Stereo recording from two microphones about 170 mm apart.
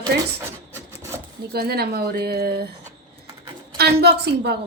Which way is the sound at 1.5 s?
70° right (ahead or behind).